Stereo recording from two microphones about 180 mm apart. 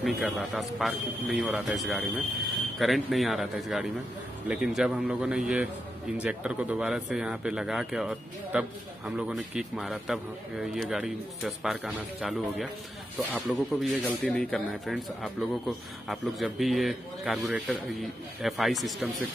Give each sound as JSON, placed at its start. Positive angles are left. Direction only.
{"t": 0.0, "sound": "speech", "side_deg": 0}